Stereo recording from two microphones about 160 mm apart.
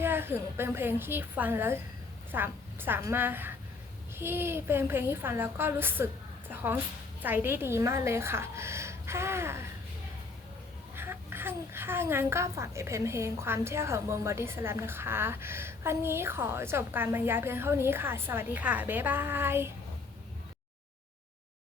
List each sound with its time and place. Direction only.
0.0 s a child's voice: 15° right (ahead or behind)
10.9 s a child's voice: 15° right (ahead or behind)